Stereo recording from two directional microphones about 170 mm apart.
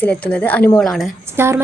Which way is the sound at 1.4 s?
15° right (ahead or behind).